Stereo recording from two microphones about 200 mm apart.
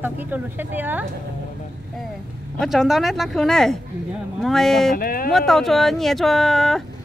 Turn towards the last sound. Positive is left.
turn(degrees=0)  # may be behind; listen again after turning